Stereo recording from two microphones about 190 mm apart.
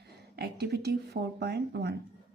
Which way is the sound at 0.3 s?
60° right (ahead or behind).